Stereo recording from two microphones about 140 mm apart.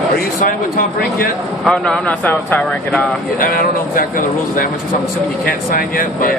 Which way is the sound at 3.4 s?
90° left.